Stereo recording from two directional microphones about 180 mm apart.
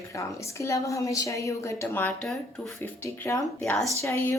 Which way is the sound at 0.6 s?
15° left (ahead or behind).